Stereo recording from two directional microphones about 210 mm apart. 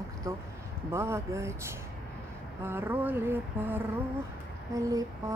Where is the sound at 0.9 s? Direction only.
10° right (ahead or behind).